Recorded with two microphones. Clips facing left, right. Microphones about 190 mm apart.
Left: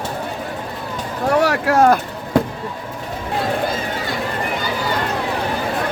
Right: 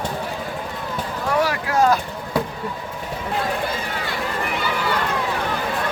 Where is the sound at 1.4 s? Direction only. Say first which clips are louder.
Left 4 dB; 70° left (ahead or behind).